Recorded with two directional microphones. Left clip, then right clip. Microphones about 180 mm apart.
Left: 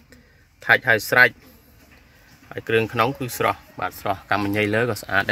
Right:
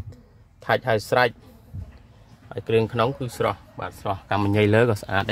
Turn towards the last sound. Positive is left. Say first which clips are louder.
# even
turn(degrees=-15)  # may be behind; listen again after turning